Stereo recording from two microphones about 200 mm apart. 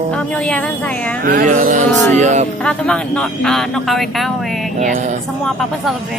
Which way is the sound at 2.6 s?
5° left (ahead or behind).